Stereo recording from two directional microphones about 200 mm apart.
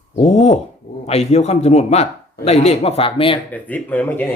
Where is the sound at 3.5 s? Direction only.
10° left (ahead or behind).